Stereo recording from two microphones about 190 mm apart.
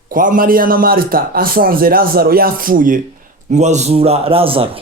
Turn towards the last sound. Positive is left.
turn(degrees=-30)  # may be behind; listen again after turning